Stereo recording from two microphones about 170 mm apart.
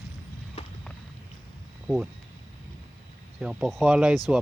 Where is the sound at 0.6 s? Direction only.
40° left (ahead or behind).